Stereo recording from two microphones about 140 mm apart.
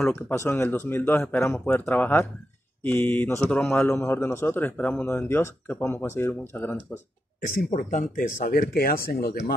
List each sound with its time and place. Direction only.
0.0 s a man's voice: 15° left (ahead or behind)
7.4 s speech: 70° left (ahead or behind); by 9.4 s 90° left